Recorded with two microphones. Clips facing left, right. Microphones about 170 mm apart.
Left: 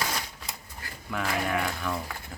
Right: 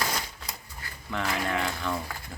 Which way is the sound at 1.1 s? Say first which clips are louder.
Left 1 dB; 5° left (ahead or behind).